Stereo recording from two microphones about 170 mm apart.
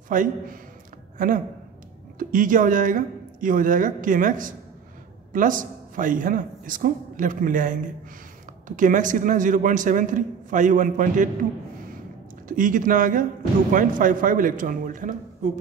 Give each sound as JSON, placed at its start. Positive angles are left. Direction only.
{"t": 0.1, "sound": "speech", "side_deg": -50}
{"t": 12.4, "sound": "speech", "side_deg": -50}